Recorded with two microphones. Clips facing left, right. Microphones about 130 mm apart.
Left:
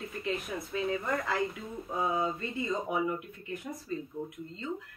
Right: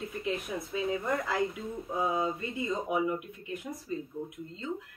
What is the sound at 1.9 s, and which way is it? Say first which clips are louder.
Speech: even; 15° right (ahead or behind).